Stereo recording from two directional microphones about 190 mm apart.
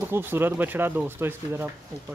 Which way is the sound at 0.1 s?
10° right (ahead or behind).